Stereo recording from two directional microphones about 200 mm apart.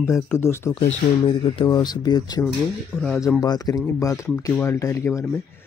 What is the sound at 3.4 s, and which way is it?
A man's voice, 20° left (ahead or behind).